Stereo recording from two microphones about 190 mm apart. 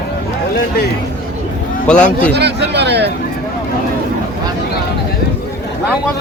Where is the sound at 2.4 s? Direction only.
60° right (ahead or behind).